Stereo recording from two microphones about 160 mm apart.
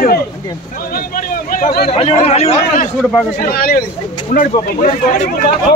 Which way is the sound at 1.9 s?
40° left (ahead or behind).